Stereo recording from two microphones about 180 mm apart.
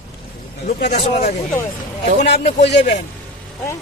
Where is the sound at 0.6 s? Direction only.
60° left (ahead or behind).